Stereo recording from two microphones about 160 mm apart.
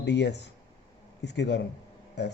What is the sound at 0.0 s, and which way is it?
A man's voice, 90° left.